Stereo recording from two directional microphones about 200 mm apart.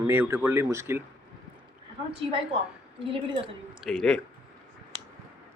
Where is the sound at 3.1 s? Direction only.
25° right (ahead or behind).